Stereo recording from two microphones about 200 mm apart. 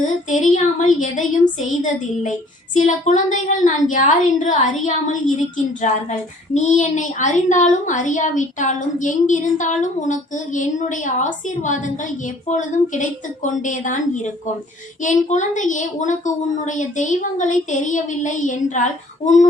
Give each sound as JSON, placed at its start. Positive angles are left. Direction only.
{"t": 0.1, "sound": "speech", "side_deg": 40}
{"t": 2.7, "sound": "speech", "side_deg": 35}